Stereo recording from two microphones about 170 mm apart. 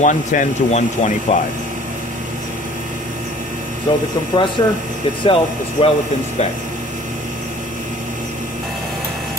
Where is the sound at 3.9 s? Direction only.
30° left (ahead or behind).